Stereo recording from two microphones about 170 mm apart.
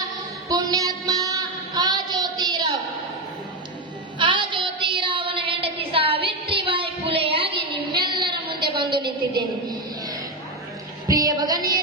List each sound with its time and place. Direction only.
0.5 s child singing: 20° right (ahead or behind)
4.2 s child singing: 30° right (ahead or behind)
6.2 s a sound: 30° right (ahead or behind)